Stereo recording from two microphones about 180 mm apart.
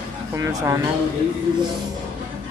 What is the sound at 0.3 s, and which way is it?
Speech, 15° right (ahead or behind).